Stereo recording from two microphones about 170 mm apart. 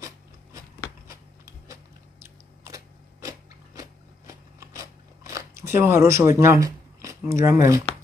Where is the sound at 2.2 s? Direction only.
15° right (ahead or behind).